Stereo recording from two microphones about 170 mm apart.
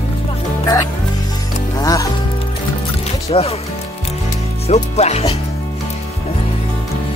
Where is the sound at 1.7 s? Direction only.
20° left (ahead or behind).